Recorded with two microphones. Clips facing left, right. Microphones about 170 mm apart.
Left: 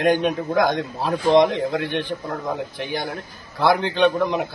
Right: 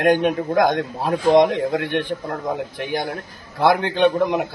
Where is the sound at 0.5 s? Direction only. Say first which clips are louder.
Right 2 dB; 50° right (ahead or behind).